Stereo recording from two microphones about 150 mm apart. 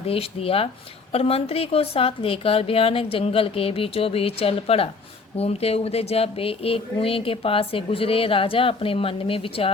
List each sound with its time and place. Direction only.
0.0 s speech: 40° left (ahead or behind)